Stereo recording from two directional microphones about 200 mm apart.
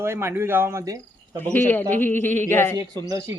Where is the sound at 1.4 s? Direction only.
10° left (ahead or behind).